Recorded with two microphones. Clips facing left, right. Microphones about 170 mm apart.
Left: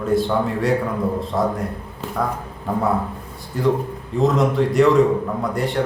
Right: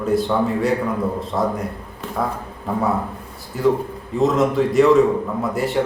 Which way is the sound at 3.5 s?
Centre (ahead or behind).